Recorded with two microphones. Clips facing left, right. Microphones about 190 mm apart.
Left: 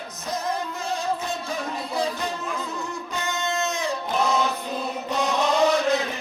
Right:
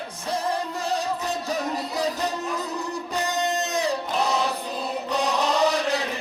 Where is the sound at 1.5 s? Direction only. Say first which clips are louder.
Right 2 dB; 40° right (ahead or behind).